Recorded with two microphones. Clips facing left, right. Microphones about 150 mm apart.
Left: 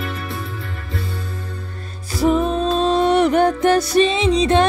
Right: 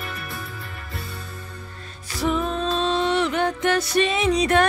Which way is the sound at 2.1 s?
35° left (ahead or behind).